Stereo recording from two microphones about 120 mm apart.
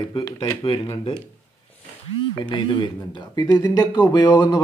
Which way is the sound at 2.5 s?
40° left (ahead or behind).